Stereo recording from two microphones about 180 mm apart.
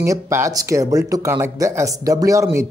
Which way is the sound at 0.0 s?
15° right (ahead or behind).